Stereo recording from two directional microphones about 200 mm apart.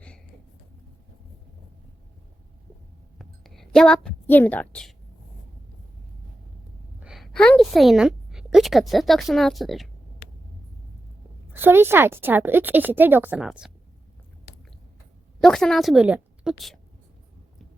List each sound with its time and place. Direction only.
3.2 s a sound: centre (ahead or behind)
7.0 s a woman's voice: centre (ahead or behind)
11.5 s a woman's voice: 10° right (ahead or behind)
15.4 s a woman's voice: centre (ahead or behind)